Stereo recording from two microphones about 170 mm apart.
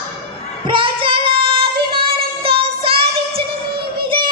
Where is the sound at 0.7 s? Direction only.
30° right (ahead or behind).